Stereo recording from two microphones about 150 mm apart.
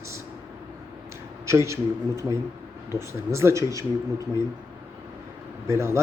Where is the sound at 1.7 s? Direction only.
20° right (ahead or behind).